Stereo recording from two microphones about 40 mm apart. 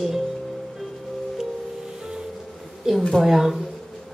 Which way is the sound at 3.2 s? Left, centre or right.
Centre.